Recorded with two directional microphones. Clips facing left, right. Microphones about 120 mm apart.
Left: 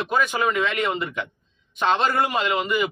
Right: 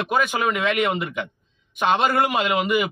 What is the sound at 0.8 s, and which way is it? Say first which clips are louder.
Speech: right 2 dB; 5° right (ahead or behind).